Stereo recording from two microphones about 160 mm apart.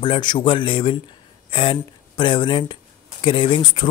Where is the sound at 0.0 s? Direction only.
30° left (ahead or behind).